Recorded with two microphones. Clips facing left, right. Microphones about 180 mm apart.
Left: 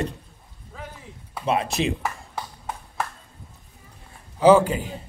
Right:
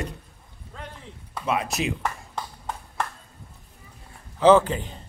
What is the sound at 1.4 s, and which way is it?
Speech, 30° left (ahead or behind).